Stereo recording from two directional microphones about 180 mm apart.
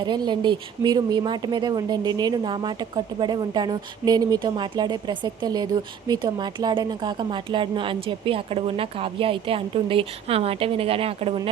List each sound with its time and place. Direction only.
0.0 s a woman's voice: 25° right (ahead or behind)